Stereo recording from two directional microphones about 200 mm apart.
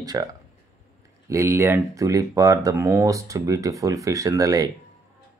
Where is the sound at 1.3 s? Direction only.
15° right (ahead or behind).